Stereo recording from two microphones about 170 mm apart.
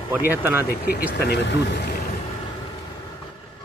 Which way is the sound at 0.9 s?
75° left (ahead or behind).